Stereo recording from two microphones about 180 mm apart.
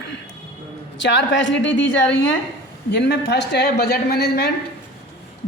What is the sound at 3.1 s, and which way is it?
A man's voice, 70° left (ahead or behind).